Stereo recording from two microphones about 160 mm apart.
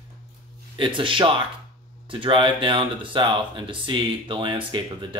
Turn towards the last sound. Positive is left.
turn(degrees=-30)  # may be behind; listen again after turning